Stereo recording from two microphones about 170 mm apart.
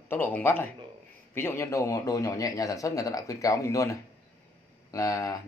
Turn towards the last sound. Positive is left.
turn(degrees=20)  # may be behind; listen again after turning